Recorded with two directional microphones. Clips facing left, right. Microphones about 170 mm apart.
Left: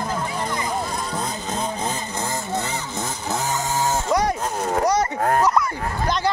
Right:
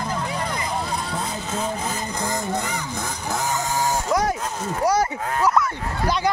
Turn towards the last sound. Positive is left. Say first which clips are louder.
# even
turn(degrees=-5)  # may be behind; listen again after turning